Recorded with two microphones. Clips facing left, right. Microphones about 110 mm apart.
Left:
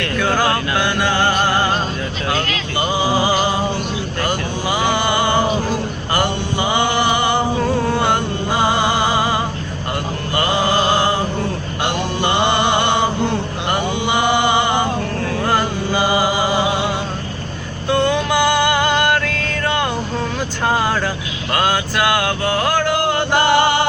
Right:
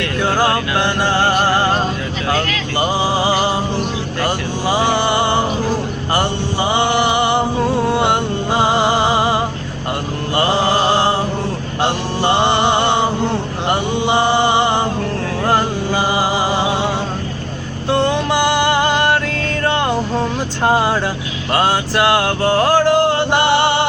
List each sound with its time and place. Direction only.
0.8 s music: 30° right (ahead or behind)
1.2 s music: 5° right (ahead or behind)
3.0 s music: 25° right (ahead or behind)
4.2 s vehicle: 25° right (ahead or behind)
6.1 s music: 25° right (ahead or behind)
10.3 s mantra: 30° right (ahead or behind)
15.4 s music: 25° right (ahead or behind)
20.7 s vehicle: 25° right (ahead or behind)
21.5 s music: 30° right (ahead or behind)